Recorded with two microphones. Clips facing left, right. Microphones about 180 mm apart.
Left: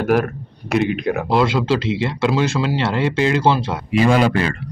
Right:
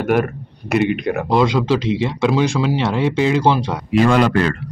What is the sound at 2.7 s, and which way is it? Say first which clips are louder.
Speech: right 1 dB; 15° right (ahead or behind).